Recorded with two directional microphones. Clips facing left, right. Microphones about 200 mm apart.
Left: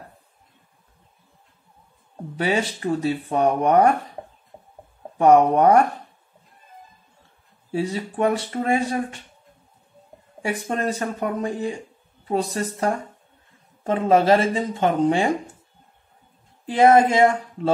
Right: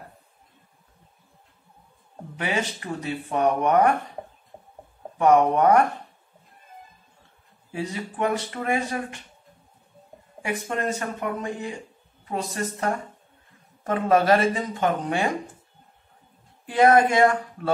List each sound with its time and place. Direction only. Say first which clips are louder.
2.3 s speech: left 5 dB; 35° left (ahead or behind)
5.1 s speech: left 3 dB; 30° left (ahead or behind)
7.7 s speech: left 6 dB; 30° left (ahead or behind)
10.4 s speech: left 3 dB; 35° left (ahead or behind)
16.6 s speech: left 2 dB; 25° left (ahead or behind)